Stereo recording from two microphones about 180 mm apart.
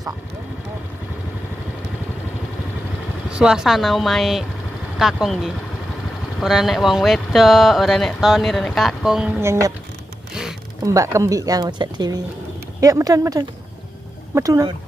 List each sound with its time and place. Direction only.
3.3 s speech: 5° right (ahead or behind)
9.4 s speech: 15° right (ahead or behind)
10.8 s speech: 15° right (ahead or behind)